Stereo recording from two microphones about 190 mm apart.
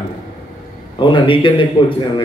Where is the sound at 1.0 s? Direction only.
25° left (ahead or behind).